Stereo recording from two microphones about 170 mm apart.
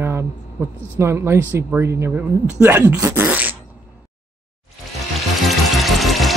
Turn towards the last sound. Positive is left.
turn(degrees=0)  # may be behind; listen again after turning